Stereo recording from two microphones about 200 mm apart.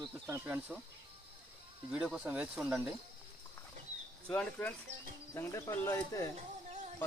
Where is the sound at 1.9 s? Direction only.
5° right (ahead or behind).